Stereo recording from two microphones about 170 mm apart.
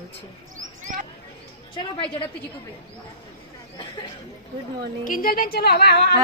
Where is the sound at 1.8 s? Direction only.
30° left (ahead or behind).